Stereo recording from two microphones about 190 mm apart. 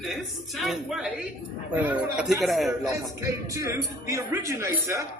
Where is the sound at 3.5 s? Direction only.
15° right (ahead or behind).